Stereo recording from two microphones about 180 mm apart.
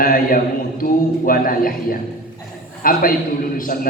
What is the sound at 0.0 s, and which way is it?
A man's voice, 50° left (ahead or behind).